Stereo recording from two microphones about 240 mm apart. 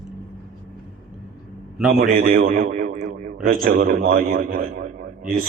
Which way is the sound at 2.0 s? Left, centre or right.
Right.